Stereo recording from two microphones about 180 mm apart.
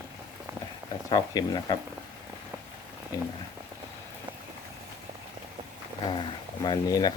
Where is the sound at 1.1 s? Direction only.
20° left (ahead or behind).